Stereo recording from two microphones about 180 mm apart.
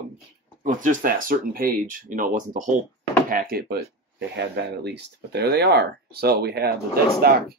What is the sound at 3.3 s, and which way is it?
Speech, 55° right (ahead or behind).